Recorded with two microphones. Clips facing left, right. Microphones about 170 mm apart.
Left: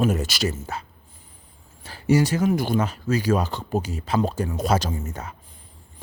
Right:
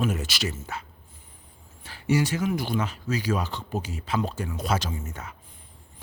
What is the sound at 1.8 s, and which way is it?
Speech, 40° left (ahead or behind).